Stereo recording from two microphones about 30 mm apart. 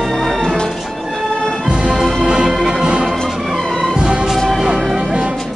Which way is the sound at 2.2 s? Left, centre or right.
Right.